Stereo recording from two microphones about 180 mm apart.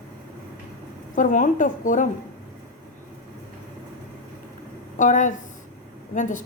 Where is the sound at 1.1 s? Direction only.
45° left (ahead or behind).